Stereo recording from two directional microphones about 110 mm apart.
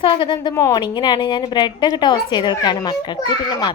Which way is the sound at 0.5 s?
30° left (ahead or behind).